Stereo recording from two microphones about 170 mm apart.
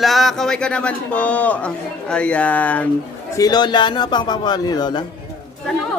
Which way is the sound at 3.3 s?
20° left (ahead or behind).